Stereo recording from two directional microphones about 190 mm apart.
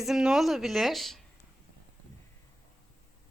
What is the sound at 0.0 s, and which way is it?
Speech, 5° right (ahead or behind).